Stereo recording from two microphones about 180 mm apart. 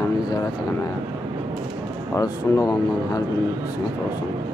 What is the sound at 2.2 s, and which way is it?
Speech, 20° left (ahead or behind).